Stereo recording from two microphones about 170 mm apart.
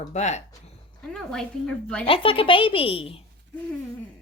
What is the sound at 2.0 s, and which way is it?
A woman's voice, 30° left (ahead or behind).